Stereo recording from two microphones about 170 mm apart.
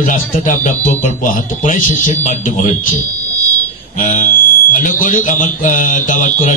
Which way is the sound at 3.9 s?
50° left (ahead or behind).